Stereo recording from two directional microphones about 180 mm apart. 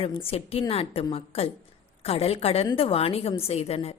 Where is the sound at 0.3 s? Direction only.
35° left (ahead or behind).